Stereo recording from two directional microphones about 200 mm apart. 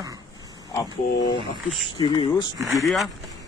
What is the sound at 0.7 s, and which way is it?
Speech, 20° left (ahead or behind).